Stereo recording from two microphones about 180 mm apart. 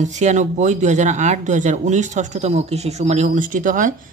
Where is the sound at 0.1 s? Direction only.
40° right (ahead or behind).